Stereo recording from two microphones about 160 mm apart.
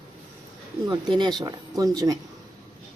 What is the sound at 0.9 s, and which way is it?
Speech, 30° right (ahead or behind).